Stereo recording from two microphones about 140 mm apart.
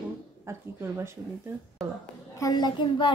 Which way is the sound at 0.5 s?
20° right (ahead or behind).